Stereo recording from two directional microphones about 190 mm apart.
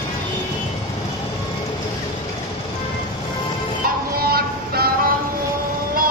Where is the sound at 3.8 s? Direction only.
50° right (ahead or behind).